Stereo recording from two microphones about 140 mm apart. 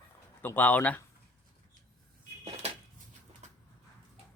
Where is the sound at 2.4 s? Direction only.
50° right (ahead or behind).